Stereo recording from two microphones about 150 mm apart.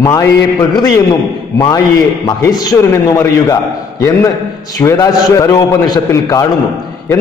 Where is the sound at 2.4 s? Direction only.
25° left (ahead or behind).